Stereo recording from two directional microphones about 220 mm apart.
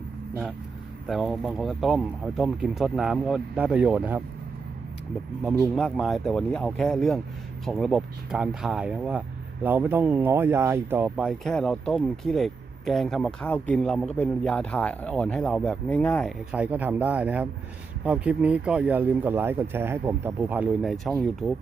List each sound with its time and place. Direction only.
1.0 s speech: centre (ahead or behind)
5.4 s speech: 5° right (ahead or behind)
16.5 s speech: 5° right (ahead or behind)